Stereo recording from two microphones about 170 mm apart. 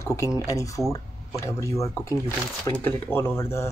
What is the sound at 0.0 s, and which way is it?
Speech, 15° left (ahead or behind).